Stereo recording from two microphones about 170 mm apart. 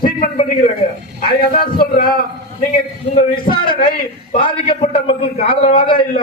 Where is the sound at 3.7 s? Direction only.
55° left (ahead or behind).